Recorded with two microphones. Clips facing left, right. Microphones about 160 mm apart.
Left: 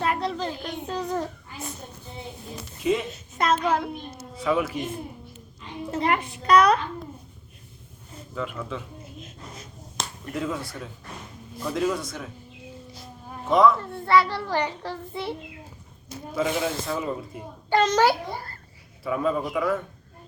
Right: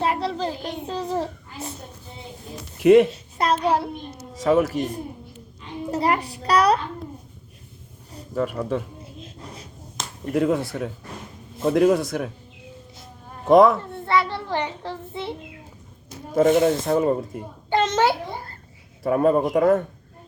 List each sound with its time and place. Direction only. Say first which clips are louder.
0.0 s a sound: right 2 dB; 30° right (ahead or behind)
2.8 s a man's voice: right 11 dB; 65° right (ahead or behind)
3.1 s hands: right 1 dB; 35° right (ahead or behind)
4.4 s a child's voice: right 6 dB; 40° right (ahead or behind)
8.1 s speech: right 7 dB; 40° right (ahead or behind)
10.3 s a man's voice: right 9 dB; 60° right (ahead or behind)
13.5 s a man's voice: right 5 dB; 60° right (ahead or behind)
14.0 s child singing: left 3 dB; 20° right (ahead or behind)
16.3 s speech: right 9 dB; 50° right (ahead or behind)
17.7 s child singing: even; 25° right (ahead or behind)
19.0 s speech: right 7 dB; 50° right (ahead or behind)